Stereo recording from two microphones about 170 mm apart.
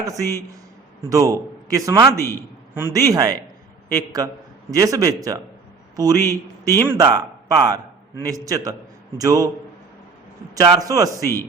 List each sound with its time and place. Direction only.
0.0 s a man's voice: 20° right (ahead or behind)
10.5 s a man's voice: 20° right (ahead or behind)